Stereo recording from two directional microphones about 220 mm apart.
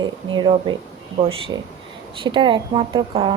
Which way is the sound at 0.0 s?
20° right (ahead or behind).